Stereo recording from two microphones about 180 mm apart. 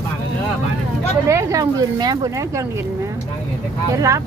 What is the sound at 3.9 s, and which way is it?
Speech, 15° right (ahead or behind).